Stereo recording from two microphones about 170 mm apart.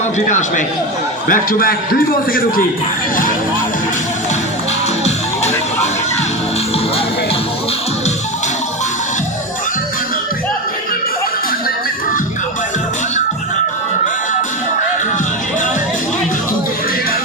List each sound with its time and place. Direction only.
0.3 s a man's voice: 45° left (ahead or behind)
1.3 s a man's voice: 55° left (ahead or behind)
5.0 s music: 40° left (ahead or behind)